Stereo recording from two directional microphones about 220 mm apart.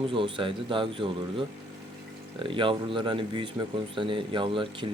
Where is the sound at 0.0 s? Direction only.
25° right (ahead or behind).